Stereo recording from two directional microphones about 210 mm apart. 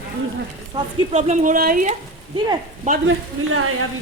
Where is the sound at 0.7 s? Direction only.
30° right (ahead or behind).